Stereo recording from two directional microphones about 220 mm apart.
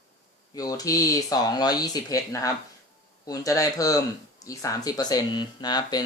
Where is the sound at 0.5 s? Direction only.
15° left (ahead or behind).